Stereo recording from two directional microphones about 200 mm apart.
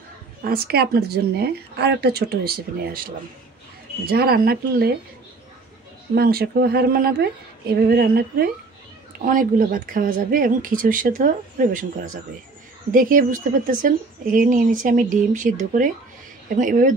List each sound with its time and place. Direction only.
0.4 s speech: 50° right (ahead or behind)
6.1 s speech: 50° right (ahead or behind)